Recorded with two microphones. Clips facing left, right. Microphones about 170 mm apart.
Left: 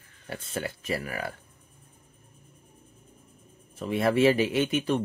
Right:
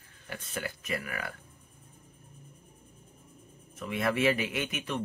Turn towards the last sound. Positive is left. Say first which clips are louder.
# left 8 dB
turn(degrees=30)  # may be behind; listen again after turning